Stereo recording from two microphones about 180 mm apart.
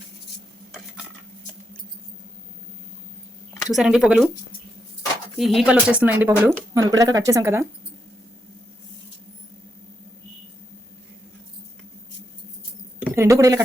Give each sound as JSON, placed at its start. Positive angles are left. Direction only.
{"t": 3.7, "sound": "speech", "side_deg": -5}
{"t": 5.4, "sound": "speech", "side_deg": 0}
{"t": 13.1, "sound": "speech", "side_deg": -15}